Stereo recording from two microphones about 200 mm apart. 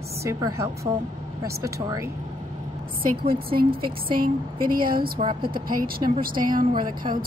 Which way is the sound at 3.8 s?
45° right (ahead or behind).